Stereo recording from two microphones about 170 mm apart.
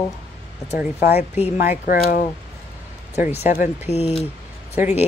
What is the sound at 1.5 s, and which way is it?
Speech, 45° left (ahead or behind).